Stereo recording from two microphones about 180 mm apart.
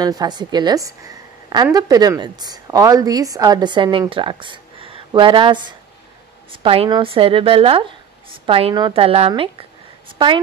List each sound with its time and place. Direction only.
0.0 s a woman's voice: 25° right (ahead or behind)